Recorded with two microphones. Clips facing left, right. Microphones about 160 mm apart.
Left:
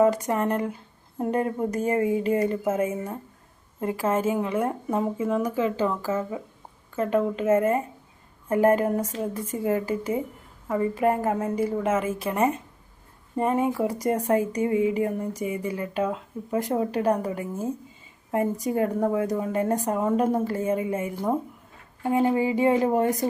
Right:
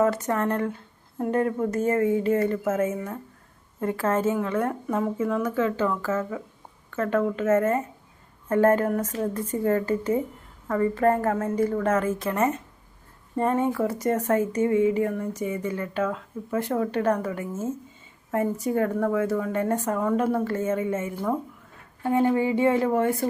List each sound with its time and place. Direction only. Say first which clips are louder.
0.0 s speech: left 2 dB; 15° left (ahead or behind)